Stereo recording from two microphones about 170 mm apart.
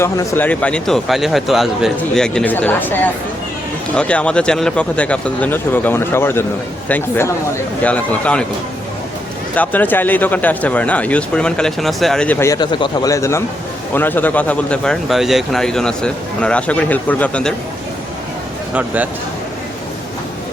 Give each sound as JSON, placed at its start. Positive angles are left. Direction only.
{"t": 0.0, "sound": "a man's voice", "side_deg": 15}
{"t": 9.6, "sound": "a man's voice", "side_deg": 10}
{"t": 12.5, "sound": "a man's voice", "side_deg": 25}
{"t": 18.7, "sound": "speech", "side_deg": -10}